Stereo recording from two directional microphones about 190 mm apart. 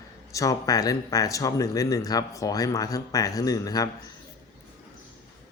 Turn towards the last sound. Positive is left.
turn(degrees=20)  # may be behind; listen again after turning